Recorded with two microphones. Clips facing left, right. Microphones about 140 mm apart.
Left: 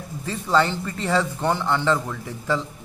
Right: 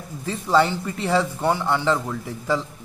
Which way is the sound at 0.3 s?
10° right (ahead or behind).